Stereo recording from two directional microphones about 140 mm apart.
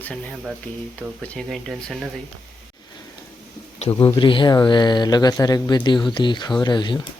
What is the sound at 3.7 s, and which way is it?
Speech, 55° left (ahead or behind).